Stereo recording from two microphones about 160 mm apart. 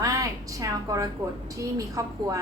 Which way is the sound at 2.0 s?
20° right (ahead or behind).